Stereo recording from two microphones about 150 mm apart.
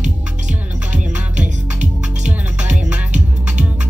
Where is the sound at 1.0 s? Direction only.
5° right (ahead or behind).